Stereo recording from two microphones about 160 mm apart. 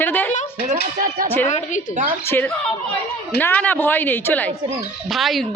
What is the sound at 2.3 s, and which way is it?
Speech, 10° left (ahead or behind).